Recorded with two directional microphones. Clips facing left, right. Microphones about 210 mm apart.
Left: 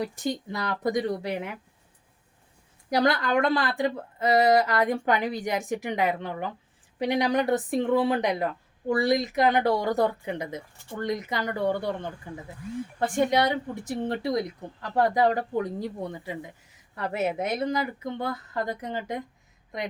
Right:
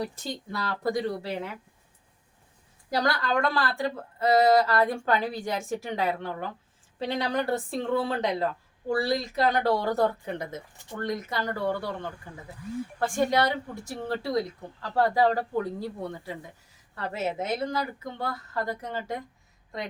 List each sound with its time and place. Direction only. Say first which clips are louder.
0.0 s speech: left 4 dB; 15° left (ahead or behind)
2.9 s a woman's voice: left 3 dB; 20° left (ahead or behind)